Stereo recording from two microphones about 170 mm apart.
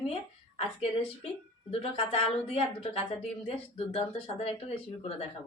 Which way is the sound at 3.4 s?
35° left (ahead or behind).